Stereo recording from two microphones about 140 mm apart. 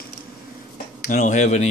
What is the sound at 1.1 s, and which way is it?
Speech, 70° left (ahead or behind).